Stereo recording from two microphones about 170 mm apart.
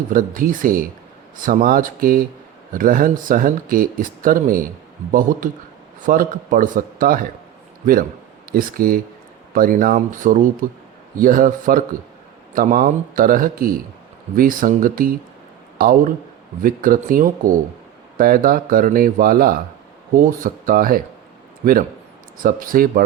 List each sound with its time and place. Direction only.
0.1 s speech: 55° right (ahead or behind)
8.5 s a man's voice: 55° right (ahead or behind)